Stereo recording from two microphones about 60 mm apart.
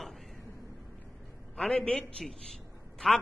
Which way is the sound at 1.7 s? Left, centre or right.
Centre.